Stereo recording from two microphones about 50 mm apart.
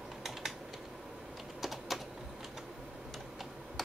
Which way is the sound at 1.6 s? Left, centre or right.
Centre.